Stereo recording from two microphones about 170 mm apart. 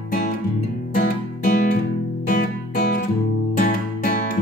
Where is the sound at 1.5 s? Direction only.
55° left (ahead or behind).